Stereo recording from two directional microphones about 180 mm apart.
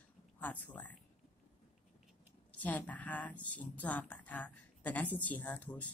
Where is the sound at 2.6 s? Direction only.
10° left (ahead or behind).